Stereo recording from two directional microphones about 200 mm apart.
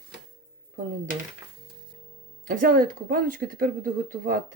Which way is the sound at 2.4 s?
45° right (ahead or behind).